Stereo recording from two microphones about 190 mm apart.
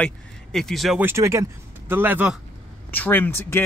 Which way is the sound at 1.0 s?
15° right (ahead or behind).